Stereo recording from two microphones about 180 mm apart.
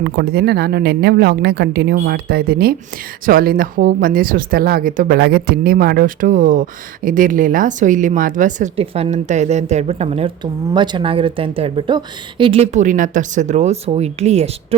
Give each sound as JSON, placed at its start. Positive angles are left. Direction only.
{"t": 0.0, "sound": "a woman's voice", "side_deg": -60}